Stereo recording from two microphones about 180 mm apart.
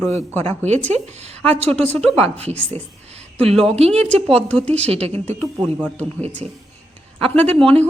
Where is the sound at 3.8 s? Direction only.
35° right (ahead or behind).